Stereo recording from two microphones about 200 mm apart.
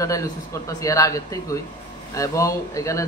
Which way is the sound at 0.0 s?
15° left (ahead or behind).